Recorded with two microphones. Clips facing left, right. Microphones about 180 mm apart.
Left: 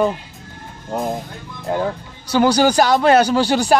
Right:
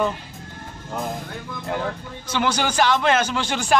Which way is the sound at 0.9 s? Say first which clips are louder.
Left 6 dB; 35° left (ahead or behind).